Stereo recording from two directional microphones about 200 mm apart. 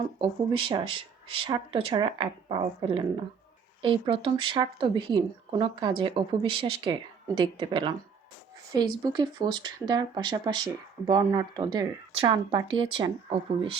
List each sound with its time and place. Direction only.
0.2 s speech: 25° right (ahead or behind)